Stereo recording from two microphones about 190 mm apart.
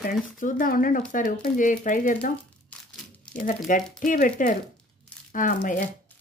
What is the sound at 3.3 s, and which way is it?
Speech, 45° left (ahead or behind).